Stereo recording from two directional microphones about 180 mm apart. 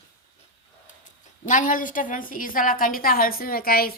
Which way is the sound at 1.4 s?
45° left (ahead or behind).